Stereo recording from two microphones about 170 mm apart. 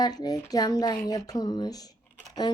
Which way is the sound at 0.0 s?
25° left (ahead or behind).